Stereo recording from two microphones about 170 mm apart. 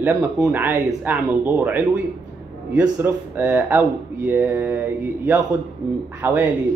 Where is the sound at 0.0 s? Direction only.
10° right (ahead or behind).